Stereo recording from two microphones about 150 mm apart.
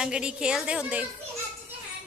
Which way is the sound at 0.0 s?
5° right (ahead or behind).